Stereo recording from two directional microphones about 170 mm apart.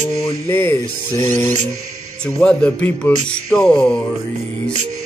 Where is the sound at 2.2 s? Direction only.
5° left (ahead or behind).